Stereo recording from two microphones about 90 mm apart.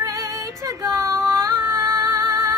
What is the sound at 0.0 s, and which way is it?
Female singing, 35° right (ahead or behind).